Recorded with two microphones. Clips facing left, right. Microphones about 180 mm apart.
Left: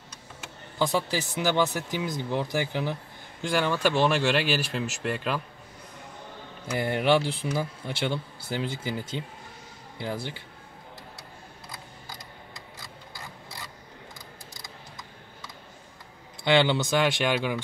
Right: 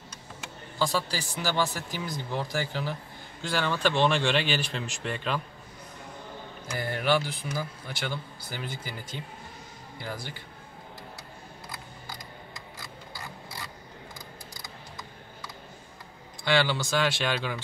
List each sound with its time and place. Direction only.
0.7 s speech: 20° left (ahead or behind)
6.8 s speech: 25° left (ahead or behind)
16.4 s speech: 20° left (ahead or behind)